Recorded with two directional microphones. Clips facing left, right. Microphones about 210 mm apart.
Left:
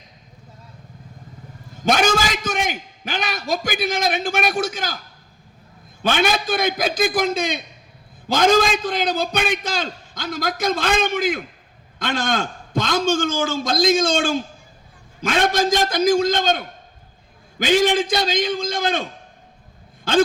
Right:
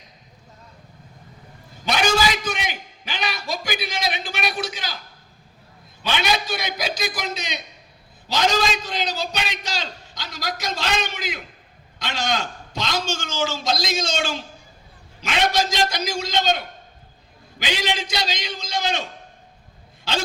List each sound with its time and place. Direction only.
1.8 s a man's voice: 45° left (ahead or behind)
6.0 s a man's voice: 50° left (ahead or behind)
20.1 s speech: 50° left (ahead or behind)